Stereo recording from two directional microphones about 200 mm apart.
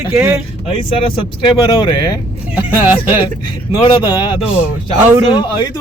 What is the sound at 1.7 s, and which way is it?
Speech, 25° left (ahead or behind).